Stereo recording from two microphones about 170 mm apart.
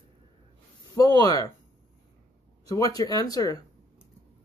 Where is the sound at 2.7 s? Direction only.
20° left (ahead or behind).